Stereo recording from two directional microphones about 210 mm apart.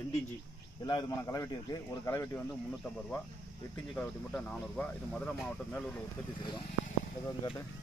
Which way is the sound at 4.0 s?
5° left (ahead or behind).